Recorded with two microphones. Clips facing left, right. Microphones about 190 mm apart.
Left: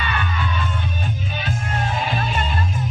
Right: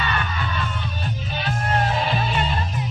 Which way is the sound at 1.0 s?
50° left (ahead or behind).